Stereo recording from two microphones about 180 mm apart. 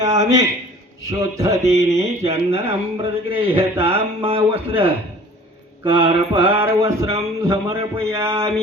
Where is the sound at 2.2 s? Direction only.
35° right (ahead or behind).